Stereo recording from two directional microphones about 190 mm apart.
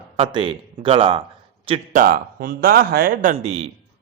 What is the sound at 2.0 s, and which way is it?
A man's voice, 50° right (ahead or behind).